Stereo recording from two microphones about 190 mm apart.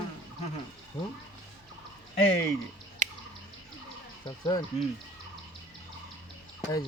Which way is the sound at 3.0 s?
40° right (ahead or behind).